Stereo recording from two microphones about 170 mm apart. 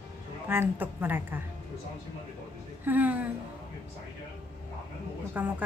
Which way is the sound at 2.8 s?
10° right (ahead or behind).